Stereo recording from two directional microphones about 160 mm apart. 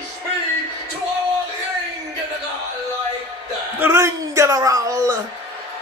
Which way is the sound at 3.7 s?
15° right (ahead or behind).